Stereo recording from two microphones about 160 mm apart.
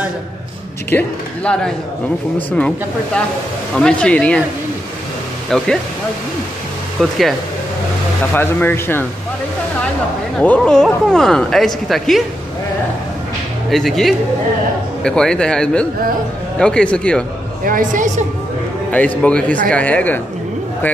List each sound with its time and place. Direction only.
0.8 s speech: 10° left (ahead or behind)
3.7 s speech: 5° left (ahead or behind)
5.5 s speech: 5° left (ahead or behind)
7.0 s speech: centre (ahead or behind)
8.4 s speech: 15° left (ahead or behind)
10.4 s speech: 5° left (ahead or behind)
13.7 s speech: centre (ahead or behind)
17.6 s a woman's voice: 55° right (ahead or behind)
18.9 s speech: 10° left (ahead or behind)